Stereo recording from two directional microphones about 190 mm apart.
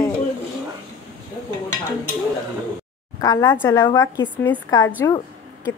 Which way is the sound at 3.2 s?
20° left (ahead or behind).